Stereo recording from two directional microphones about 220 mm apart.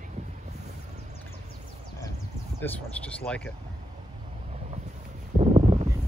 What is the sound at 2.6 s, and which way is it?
Speech, 5° left (ahead or behind).